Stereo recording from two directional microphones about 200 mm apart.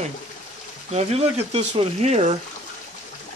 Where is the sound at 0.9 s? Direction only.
30° right (ahead or behind).